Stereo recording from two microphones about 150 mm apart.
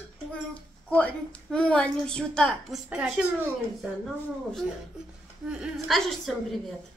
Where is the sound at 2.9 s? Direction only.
10° right (ahead or behind).